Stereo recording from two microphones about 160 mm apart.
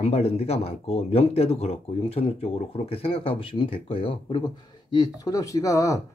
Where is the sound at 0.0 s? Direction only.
40° left (ahead or behind).